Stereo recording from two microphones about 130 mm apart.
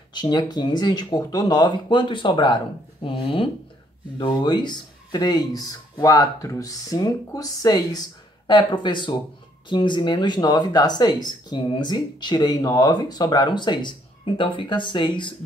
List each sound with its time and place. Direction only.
0.1 s speech: 35° left (ahead or behind)